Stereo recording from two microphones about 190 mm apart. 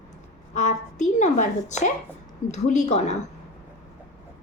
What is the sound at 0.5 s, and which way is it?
A woman's voice, 40° left (ahead or behind).